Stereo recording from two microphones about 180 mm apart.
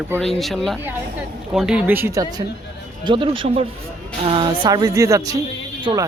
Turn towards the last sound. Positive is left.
turn(degrees=-30)  # may be behind; listen again after turning